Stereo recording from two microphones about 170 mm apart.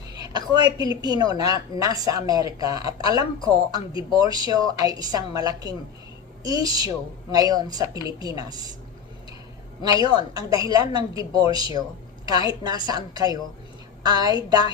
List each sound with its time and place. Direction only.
0.2 s a woman's voice: 25° right (ahead or behind)
10.0 s a woman's voice: 25° right (ahead or behind)